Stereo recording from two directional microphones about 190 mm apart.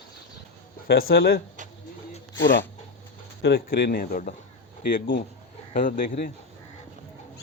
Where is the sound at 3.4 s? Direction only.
60° left (ahead or behind).